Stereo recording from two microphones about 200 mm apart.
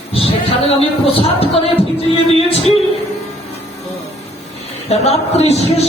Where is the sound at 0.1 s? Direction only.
30° left (ahead or behind).